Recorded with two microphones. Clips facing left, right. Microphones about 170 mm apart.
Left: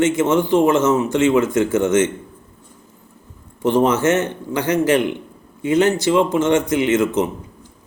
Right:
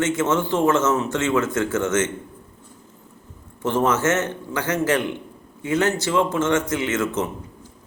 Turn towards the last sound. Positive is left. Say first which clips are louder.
# left 6 dB
turn(degrees=15)  # may be behind; listen again after turning